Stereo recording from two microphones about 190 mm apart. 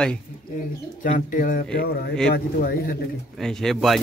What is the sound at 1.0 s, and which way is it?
Speech, 45° left (ahead or behind).